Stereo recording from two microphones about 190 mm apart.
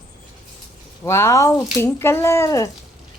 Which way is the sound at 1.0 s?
15° left (ahead or behind).